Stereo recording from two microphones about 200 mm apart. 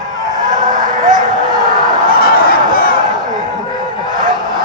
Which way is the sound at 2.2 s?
50° left (ahead or behind).